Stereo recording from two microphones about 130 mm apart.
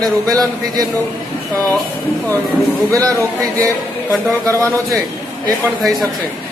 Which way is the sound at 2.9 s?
25° right (ahead or behind).